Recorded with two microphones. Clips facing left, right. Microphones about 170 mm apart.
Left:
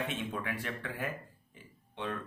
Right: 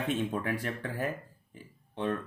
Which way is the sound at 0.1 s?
40° right (ahead or behind).